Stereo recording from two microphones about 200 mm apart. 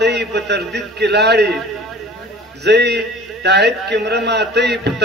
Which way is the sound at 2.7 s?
55° right (ahead or behind).